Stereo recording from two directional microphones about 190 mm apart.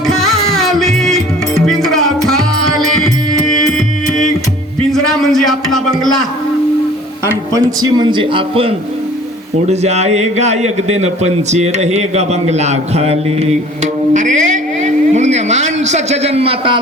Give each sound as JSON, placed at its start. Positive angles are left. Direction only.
{"t": 0.1, "sound": "music", "side_deg": 0}
{"t": 4.9, "sound": "a sound", "side_deg": 0}
{"t": 7.3, "sound": "a man's voice", "side_deg": -20}